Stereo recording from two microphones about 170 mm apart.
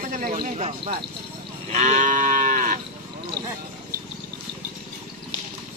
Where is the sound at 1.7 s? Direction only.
45° right (ahead or behind).